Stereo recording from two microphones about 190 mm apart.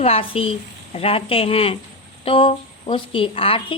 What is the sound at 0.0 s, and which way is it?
A woman's voice, 30° left (ahead or behind).